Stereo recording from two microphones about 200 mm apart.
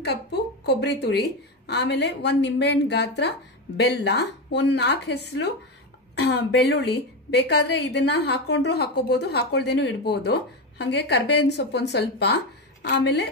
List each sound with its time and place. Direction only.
0.0 s a woman's voice: 55° left (ahead or behind)